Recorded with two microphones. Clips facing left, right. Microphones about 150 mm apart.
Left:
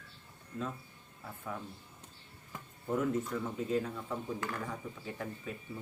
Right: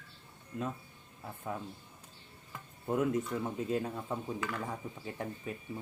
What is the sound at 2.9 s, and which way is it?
Speech, 20° right (ahead or behind).